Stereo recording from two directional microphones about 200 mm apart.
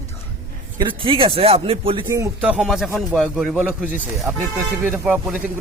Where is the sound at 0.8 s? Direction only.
25° right (ahead or behind).